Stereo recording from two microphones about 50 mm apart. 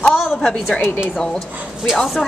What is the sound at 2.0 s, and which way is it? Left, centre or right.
Speech, centre.